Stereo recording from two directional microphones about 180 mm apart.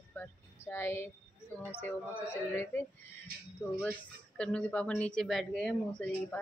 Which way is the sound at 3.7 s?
10° left (ahead or behind).